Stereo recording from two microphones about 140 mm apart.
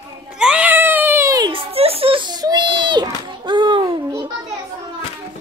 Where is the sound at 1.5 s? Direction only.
40° right (ahead or behind).